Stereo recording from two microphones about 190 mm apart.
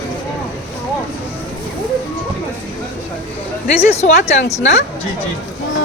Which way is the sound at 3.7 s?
35° left (ahead or behind).